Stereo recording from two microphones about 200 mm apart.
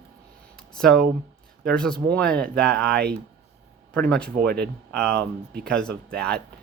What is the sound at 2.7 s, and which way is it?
Speech, 55° right (ahead or behind).